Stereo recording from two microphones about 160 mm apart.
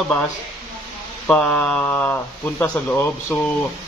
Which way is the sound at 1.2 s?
10° left (ahead or behind).